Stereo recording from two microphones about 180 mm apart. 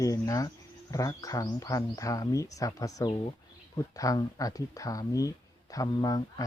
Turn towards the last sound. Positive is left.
turn(degrees=20)  # may be behind; listen again after turning